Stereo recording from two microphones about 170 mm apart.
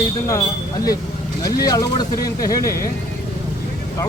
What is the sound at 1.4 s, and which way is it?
A man's voice, 20° left (ahead or behind).